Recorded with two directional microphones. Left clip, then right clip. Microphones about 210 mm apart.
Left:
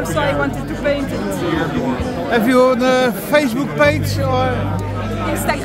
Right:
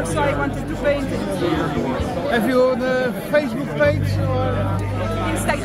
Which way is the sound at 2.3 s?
35° left (ahead or behind).